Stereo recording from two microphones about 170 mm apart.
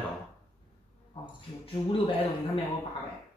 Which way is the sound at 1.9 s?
30° left (ahead or behind).